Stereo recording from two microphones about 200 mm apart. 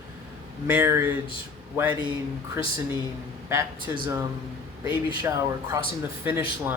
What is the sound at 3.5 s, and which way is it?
Speech, 15° right (ahead or behind).